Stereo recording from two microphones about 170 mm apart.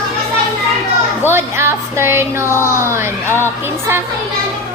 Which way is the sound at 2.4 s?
15° left (ahead or behind).